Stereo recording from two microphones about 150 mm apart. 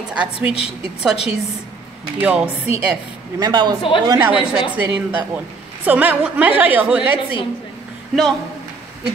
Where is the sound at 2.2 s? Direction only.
5° right (ahead or behind).